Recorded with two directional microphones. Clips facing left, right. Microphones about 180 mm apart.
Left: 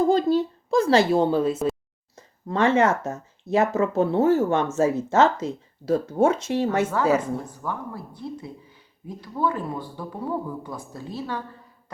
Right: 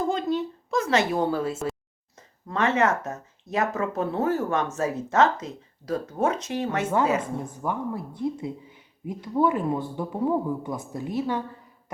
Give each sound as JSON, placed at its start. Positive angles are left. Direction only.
{"t": 0.1, "sound": "a woman's voice", "side_deg": 35}
{"t": 6.9, "sound": "speech", "side_deg": -20}